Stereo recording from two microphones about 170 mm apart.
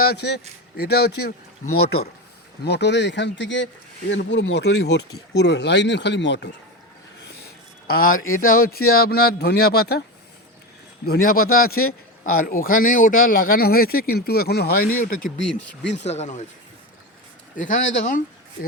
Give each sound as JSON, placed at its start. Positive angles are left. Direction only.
{"t": 0.0, "sound": "a man's voice", "side_deg": 75}
{"t": 2.6, "sound": "speech", "side_deg": 85}
{"t": 7.9, "sound": "a man's voice", "side_deg": 60}
{"t": 11.0, "sound": "a man's voice", "side_deg": 65}
{"t": 15.5, "sound": "speech", "side_deg": 90}
{"t": 16.0, "sound": "speech", "side_deg": 40}
{"t": 17.6, "sound": "speech", "side_deg": 50}